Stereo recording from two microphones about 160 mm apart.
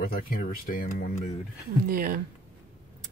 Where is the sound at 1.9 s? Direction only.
65° right (ahead or behind).